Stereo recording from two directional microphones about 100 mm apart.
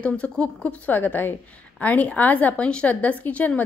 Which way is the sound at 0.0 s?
10° left (ahead or behind).